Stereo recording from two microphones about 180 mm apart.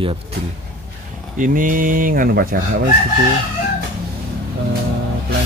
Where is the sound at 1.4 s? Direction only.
50° right (ahead or behind).